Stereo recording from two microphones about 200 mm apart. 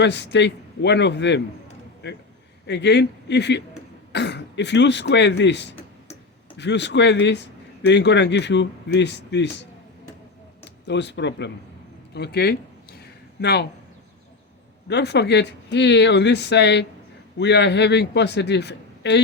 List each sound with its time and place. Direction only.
0.0 s a man's voice: 60° left (ahead or behind)
10.8 s a man's voice: 60° left (ahead or behind)
14.8 s a man's voice: 55° left (ahead or behind)